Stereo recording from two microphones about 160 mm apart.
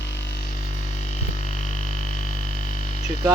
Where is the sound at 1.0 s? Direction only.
50° left (ahead or behind).